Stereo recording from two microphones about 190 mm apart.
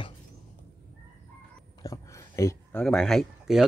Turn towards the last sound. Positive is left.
turn(degrees=0)  # may be behind; listen again after turning